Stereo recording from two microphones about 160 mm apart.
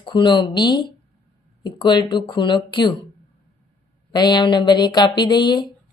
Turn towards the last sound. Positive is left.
turn(degrees=30)  # may be behind; listen again after turning